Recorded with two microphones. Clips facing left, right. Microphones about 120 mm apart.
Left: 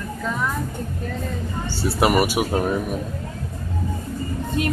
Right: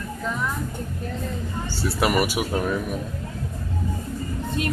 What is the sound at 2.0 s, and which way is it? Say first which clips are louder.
Speech: left 4 dB; 25° left (ahead or behind).